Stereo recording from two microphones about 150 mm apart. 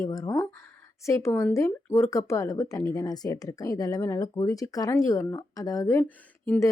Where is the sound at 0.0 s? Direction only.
20° left (ahead or behind).